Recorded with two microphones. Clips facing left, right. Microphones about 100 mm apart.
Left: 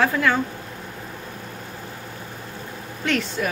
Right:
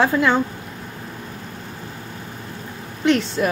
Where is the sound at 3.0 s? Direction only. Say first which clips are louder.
Right 6 dB; 20° right (ahead or behind).